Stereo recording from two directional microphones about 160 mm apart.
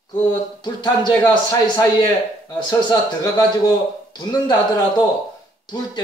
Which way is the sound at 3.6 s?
25° left (ahead or behind).